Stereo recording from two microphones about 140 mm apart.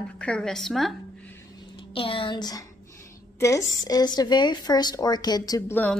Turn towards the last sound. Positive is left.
turn(degrees=10)  # may be behind; listen again after turning